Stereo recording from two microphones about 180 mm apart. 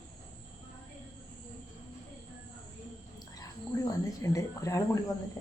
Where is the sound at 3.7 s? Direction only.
20° left (ahead or behind).